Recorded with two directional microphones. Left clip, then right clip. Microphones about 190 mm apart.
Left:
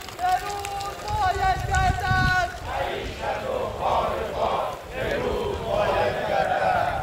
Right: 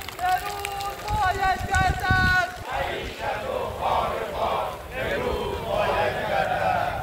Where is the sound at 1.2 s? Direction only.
15° left (ahead or behind).